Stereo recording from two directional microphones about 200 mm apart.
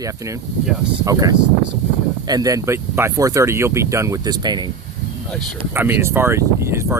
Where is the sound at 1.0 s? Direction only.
15° right (ahead or behind).